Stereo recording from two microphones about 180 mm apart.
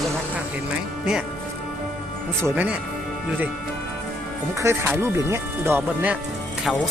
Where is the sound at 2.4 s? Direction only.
10° right (ahead or behind).